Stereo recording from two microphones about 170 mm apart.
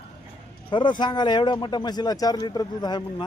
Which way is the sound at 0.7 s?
25° left (ahead or behind).